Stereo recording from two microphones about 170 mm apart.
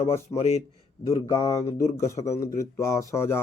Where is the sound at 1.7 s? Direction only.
45° left (ahead or behind).